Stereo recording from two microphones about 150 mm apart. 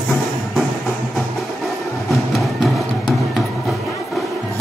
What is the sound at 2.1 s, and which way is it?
Music, centre (ahead or behind).